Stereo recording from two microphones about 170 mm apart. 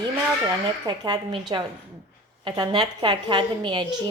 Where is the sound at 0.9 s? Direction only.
25° right (ahead or behind).